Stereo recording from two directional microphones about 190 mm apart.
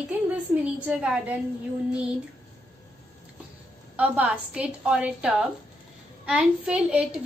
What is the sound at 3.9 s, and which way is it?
A woman's voice, 5° right (ahead or behind).